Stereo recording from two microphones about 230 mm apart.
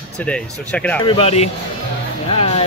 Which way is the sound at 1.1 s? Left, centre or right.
Left.